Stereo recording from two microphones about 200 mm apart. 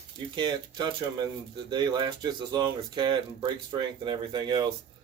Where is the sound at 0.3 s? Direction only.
20° right (ahead or behind).